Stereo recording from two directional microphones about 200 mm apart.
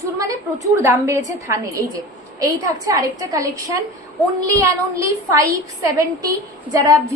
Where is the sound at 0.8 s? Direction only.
15° right (ahead or behind).